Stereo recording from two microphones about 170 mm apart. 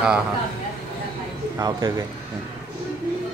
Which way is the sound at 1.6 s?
20° right (ahead or behind).